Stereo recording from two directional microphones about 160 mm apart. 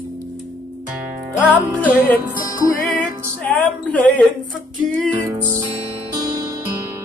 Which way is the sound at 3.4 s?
10° left (ahead or behind).